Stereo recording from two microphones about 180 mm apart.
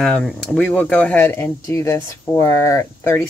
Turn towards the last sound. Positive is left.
turn(degrees=15)  # may be behind; listen again after turning